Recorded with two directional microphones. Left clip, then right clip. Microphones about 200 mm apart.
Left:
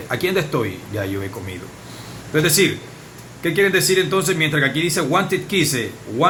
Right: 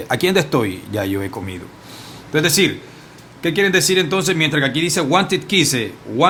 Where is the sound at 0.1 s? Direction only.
60° right (ahead or behind).